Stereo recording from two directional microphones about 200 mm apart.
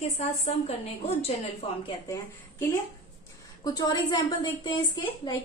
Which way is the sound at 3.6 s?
20° left (ahead or behind).